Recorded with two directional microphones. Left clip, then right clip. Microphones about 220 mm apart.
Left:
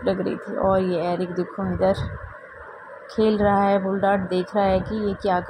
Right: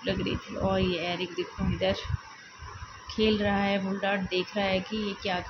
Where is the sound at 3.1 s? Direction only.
25° left (ahead or behind).